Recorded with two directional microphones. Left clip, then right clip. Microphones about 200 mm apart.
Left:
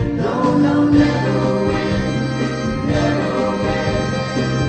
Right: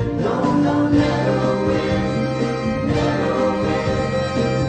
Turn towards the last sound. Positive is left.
turn(degrees=15)  # may be behind; listen again after turning